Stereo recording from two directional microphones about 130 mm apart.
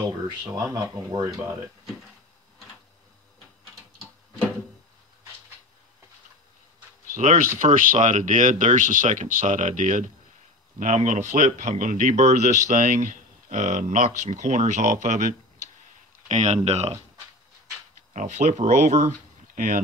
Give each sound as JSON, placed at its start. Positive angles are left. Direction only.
{"t": 0.4, "sound": "speech", "side_deg": -25}
{"t": 7.5, "sound": "speech", "side_deg": -90}
{"t": 18.1, "sound": "speech", "side_deg": -65}